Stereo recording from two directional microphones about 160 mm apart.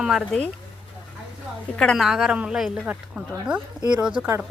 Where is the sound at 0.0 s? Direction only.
Centre (ahead or behind).